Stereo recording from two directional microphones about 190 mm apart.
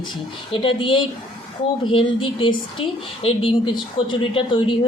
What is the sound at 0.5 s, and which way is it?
Speech, 30° left (ahead or behind).